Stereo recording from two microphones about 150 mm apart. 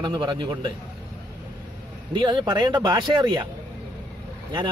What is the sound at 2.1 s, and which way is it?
Speech, 30° right (ahead or behind).